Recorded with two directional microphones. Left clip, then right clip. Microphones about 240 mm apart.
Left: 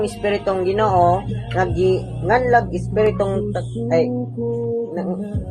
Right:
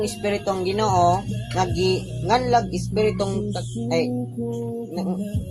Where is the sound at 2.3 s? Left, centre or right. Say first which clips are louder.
Left 4 dB; right.